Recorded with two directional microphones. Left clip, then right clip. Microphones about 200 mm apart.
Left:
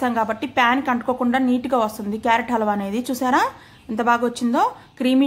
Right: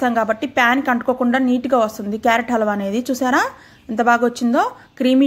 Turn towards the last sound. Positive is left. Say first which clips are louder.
# right 3 dB
turn(degrees=-15)  # may be behind; listen again after turning